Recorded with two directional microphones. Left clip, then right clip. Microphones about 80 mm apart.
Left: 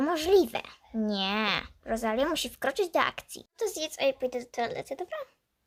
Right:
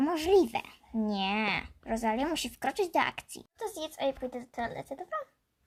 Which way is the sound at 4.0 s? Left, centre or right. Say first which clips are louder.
Left 5 dB; left.